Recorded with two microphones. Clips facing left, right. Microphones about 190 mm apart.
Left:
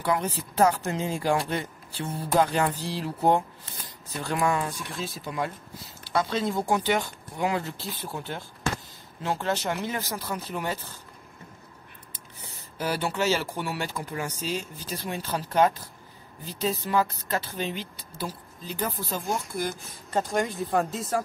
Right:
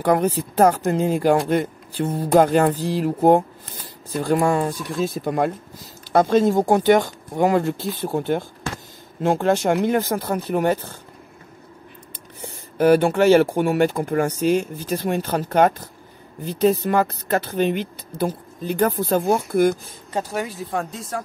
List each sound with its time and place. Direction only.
0.0 s speech: 50° right (ahead or behind)
4.2 s speech: 35° right (ahead or behind); by 11.0 s 55° right (ahead or behind)
12.4 s speech: 55° right (ahead or behind)
20.1 s speech: 10° right (ahead or behind)